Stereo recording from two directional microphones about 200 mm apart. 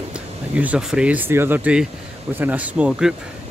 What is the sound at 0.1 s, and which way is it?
Speech, 5° right (ahead or behind).